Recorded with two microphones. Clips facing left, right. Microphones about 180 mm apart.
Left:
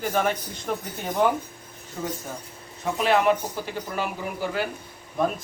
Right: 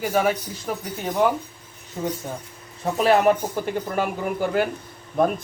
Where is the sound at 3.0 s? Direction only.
50° right (ahead or behind).